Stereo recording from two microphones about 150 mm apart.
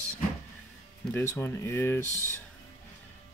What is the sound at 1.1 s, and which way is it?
Speech, 15° left (ahead or behind).